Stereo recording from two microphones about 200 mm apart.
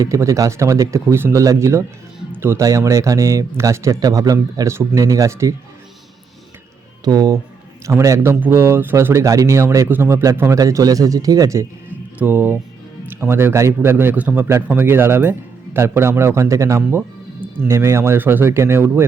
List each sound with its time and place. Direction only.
0.0 s speech: 15° right (ahead or behind)
7.0 s speech: 20° right (ahead or behind)